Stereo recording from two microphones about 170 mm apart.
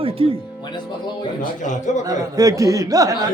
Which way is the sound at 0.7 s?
25° left (ahead or behind).